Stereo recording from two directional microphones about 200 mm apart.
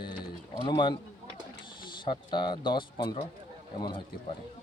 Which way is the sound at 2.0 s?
25° left (ahead or behind).